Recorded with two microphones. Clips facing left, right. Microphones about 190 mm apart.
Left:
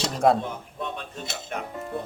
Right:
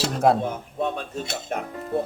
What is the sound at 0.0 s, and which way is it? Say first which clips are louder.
Speech: right 1 dB; 5° right (ahead or behind).